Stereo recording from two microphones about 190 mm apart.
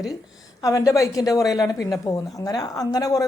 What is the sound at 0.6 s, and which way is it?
A woman's voice, 15° left (ahead or behind).